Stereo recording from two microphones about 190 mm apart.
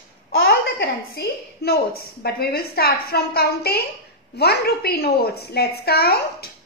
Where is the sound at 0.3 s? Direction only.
65° left (ahead or behind).